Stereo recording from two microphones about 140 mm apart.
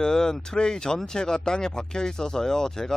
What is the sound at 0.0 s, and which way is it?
Speech, 5° left (ahead or behind).